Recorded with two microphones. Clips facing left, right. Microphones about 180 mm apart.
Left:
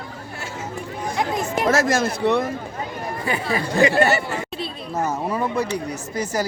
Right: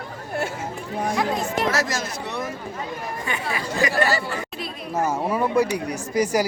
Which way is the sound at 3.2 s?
35° left (ahead or behind).